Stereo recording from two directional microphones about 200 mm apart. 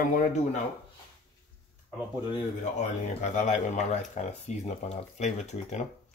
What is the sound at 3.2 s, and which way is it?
Speech, 35° left (ahead or behind).